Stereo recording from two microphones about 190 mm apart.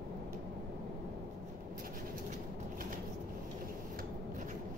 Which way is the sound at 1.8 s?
50° right (ahead or behind).